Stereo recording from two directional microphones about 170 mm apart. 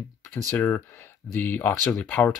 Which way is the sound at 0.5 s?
10° left (ahead or behind).